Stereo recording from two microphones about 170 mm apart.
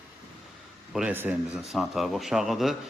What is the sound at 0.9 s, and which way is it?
A man's voice, 5° right (ahead or behind).